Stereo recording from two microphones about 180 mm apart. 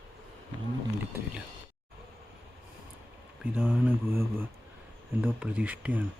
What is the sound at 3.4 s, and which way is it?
Speech, 10° right (ahead or behind).